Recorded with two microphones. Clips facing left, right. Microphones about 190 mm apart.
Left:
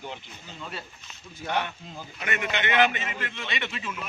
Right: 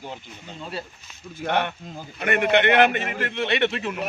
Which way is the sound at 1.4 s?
60° right (ahead or behind).